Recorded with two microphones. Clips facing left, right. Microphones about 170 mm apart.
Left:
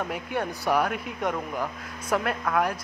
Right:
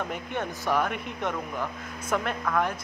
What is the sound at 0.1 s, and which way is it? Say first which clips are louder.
Speech: left 2 dB; 10° left (ahead or behind).